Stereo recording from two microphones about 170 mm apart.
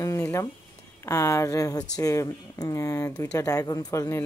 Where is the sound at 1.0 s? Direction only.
15° left (ahead or behind).